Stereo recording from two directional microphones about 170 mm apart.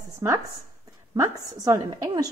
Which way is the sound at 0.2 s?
15° right (ahead or behind).